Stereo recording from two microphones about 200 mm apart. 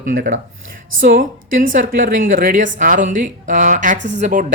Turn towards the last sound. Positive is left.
turn(degrees=-40)  # may be behind; listen again after turning